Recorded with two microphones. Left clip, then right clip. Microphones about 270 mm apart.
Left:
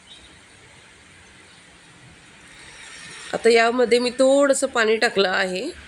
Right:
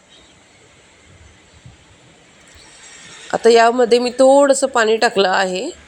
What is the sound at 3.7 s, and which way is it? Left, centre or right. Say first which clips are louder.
Speech: right 5 dB; centre.